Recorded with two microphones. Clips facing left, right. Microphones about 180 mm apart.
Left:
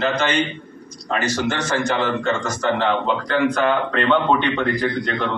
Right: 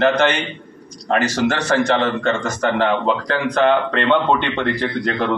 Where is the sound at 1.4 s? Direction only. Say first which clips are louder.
Right 4 dB; 75° right (ahead or behind); by 2.8 s 55° right (ahead or behind).